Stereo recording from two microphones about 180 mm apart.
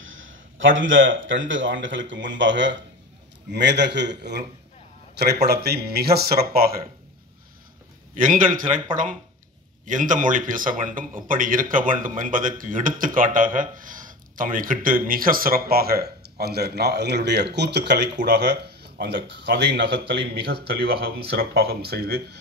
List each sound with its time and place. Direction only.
0.0 s a man's voice: 90° right
3.5 s a man's voice: 75° right (ahead or behind); by 6.8 s 55° right (ahead or behind)
8.2 s a man's voice: 50° right (ahead or behind)
9.8 s a man's voice: 45° right (ahead or behind); by 22.4 s 60° right (ahead or behind)